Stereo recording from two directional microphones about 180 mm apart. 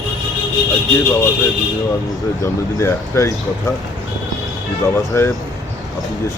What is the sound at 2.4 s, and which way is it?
Speech, 15° left (ahead or behind).